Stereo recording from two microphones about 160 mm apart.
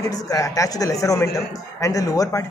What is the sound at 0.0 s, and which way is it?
Speech, 20° left (ahead or behind).